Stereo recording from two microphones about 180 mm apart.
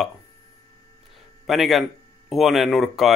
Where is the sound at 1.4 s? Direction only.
Centre (ahead or behind).